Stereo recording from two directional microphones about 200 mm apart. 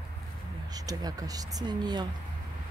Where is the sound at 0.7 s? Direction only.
20° right (ahead or behind).